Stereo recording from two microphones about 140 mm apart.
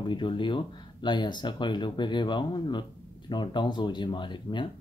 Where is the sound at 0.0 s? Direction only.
35° left (ahead or behind).